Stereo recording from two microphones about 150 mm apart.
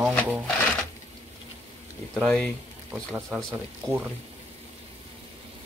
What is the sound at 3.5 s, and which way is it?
Speech, 10° right (ahead or behind).